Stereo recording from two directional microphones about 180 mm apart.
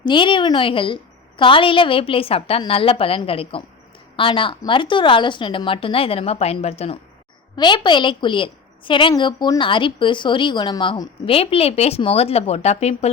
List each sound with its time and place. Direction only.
0.0 s a woman's voice: 25° left (ahead or behind)